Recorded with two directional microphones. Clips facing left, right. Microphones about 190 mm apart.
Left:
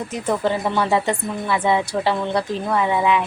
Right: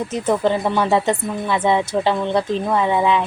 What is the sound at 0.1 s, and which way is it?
Speech, 20° right (ahead or behind).